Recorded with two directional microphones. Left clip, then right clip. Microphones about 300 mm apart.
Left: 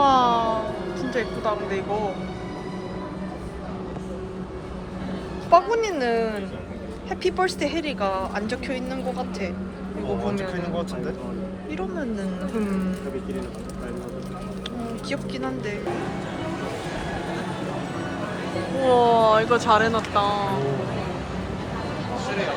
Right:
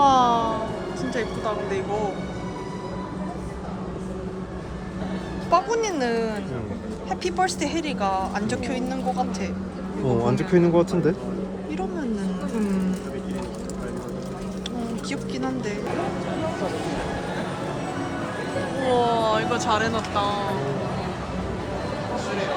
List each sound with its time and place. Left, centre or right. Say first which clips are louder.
0.0 s a sound: even; centre
1.1 s speech: left 2 dB; centre
5.5 s speech: left 3 dB; centre
10.2 s speech: right 7 dB; right
15.1 s speech: left 1 dB; centre
18.9 s speech: left 4 dB; centre